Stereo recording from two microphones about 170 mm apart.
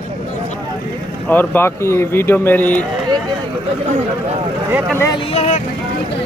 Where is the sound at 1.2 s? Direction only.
10° left (ahead or behind).